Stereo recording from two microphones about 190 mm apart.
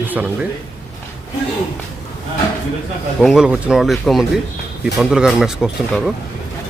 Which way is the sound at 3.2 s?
Centre (ahead or behind).